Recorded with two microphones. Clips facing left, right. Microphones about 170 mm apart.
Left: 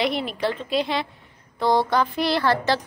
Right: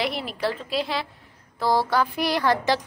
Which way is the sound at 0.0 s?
Centre (ahead or behind).